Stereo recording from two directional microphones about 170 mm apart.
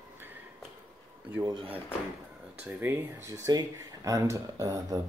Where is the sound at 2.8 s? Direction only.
15° right (ahead or behind).